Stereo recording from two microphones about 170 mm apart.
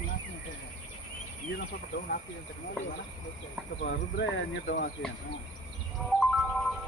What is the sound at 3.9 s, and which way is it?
Speech, 75° left (ahead or behind).